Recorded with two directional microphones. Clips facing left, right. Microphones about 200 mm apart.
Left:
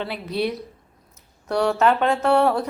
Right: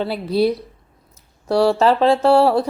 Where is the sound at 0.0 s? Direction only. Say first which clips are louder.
Right 7 dB; 35° right (ahead or behind).